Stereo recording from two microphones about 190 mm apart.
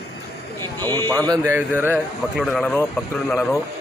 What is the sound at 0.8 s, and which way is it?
Speech, 10° left (ahead or behind).